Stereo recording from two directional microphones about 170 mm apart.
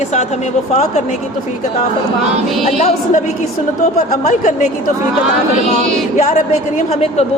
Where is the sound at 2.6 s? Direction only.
45° left (ahead or behind).